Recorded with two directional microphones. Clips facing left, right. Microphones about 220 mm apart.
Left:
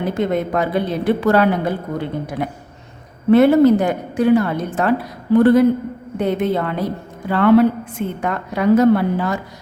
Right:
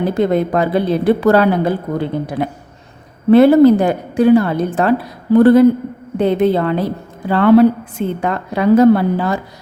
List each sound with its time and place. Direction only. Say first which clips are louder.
0.1 s speech: right 2 dB; 35° right (ahead or behind)